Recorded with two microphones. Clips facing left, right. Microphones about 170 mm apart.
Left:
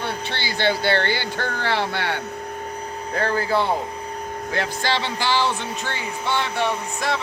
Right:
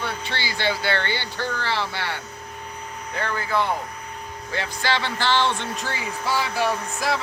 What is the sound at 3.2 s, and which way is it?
Speech, 35° left (ahead or behind).